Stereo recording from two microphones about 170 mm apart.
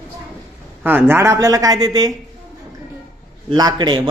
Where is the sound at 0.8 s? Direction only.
10° right (ahead or behind).